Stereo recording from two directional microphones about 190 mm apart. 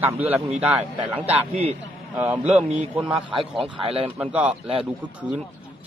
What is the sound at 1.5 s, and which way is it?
Speech, 35° right (ahead or behind).